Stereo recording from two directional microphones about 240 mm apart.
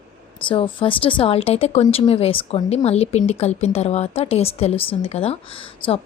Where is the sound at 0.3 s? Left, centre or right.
Left.